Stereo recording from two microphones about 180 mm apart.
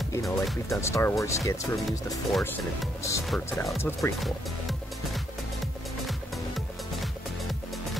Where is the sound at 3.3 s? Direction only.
10° left (ahead or behind).